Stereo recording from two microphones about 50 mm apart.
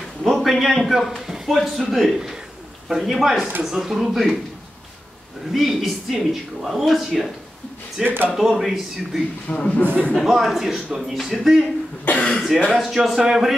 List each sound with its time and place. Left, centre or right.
0.2 s a man's voice: centre
5.5 s speech: centre
8.0 s speech: right
8.4 s speech: centre
9.5 s speech: left
10.2 s speech: centre
12.0 s cough: left
12.5 s speech: centre